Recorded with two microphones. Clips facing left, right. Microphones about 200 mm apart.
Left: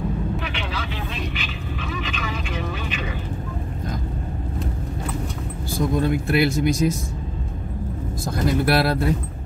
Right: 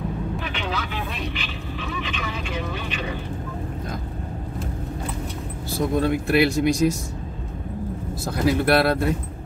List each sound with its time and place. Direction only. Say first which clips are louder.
5.8 s speech: even; centre (ahead or behind)
8.3 s speech: right 1 dB; centre (ahead or behind)